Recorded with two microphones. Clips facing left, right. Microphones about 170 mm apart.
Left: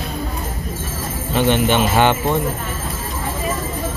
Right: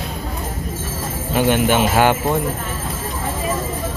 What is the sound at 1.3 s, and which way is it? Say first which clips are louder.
Speech: even; 10° right (ahead or behind).